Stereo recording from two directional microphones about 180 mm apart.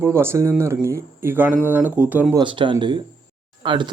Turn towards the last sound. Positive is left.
turn(degrees=-25)  # may be behind; listen again after turning